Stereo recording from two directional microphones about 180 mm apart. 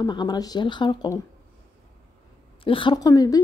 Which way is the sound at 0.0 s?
25° left (ahead or behind).